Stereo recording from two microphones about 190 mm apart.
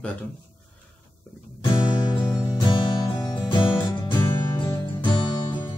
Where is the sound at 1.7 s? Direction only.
20° left (ahead or behind).